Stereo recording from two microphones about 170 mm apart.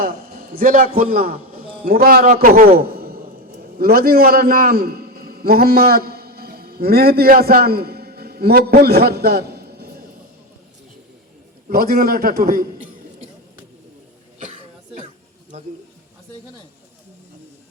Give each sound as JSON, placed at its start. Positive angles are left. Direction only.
{"t": 0.0, "sound": "a man's voice", "side_deg": -60}
{"t": 11.7, "sound": "a man's voice", "side_deg": -65}
{"t": 15.5, "sound": "speech", "side_deg": -40}